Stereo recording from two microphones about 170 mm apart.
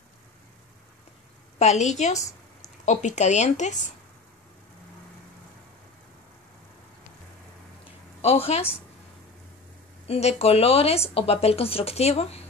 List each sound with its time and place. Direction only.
1.6 s speech: 40° left (ahead or behind)
2.1 s a sound: 20° left (ahead or behind)
2.8 s speech: 45° left (ahead or behind)
8.2 s a woman's voice: 35° left (ahead or behind)
10.0 s speech: 35° left (ahead or behind)